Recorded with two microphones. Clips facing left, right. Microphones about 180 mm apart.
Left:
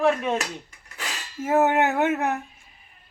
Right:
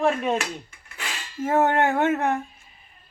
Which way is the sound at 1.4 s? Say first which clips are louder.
Even; 5° left (ahead or behind).